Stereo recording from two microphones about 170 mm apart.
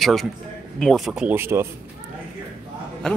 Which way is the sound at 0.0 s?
Centre (ahead or behind).